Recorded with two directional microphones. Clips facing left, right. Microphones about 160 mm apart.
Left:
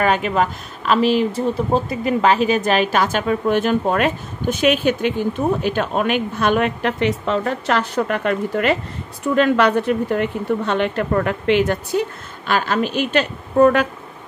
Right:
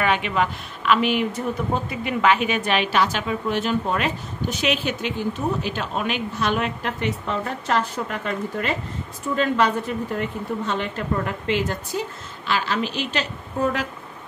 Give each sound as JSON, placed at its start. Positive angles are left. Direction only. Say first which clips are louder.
{"t": 0.0, "sound": "speech", "louder": "left 4 dB", "side_deg": 40}